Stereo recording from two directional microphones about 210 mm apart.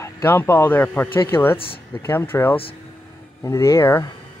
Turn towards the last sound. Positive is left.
turn(degrees=10)  # may be behind; listen again after turning